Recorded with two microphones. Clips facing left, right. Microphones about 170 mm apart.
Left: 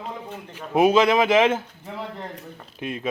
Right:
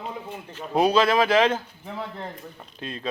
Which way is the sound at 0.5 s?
20° left (ahead or behind).